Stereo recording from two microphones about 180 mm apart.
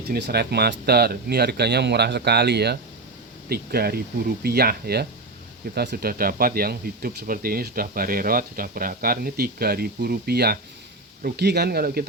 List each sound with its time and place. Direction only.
0.1 s speech: 60° right (ahead or behind)